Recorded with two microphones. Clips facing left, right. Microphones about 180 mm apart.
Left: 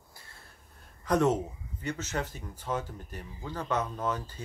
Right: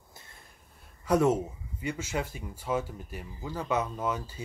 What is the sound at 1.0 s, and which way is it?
Speech, 10° right (ahead or behind).